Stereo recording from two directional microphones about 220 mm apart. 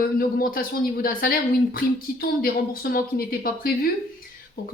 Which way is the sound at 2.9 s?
40° left (ahead or behind).